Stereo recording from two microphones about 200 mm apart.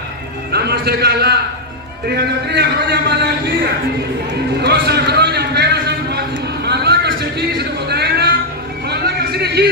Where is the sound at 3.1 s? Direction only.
55° right (ahead or behind).